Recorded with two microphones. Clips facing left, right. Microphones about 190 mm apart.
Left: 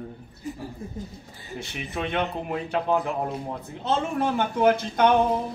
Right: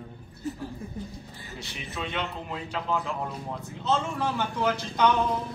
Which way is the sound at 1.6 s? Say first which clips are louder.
Left 5 dB; 55° left (ahead or behind).